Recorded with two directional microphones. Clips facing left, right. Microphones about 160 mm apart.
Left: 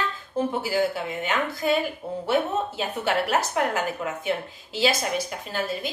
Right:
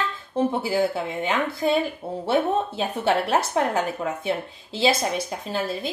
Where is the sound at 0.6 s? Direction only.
30° right (ahead or behind).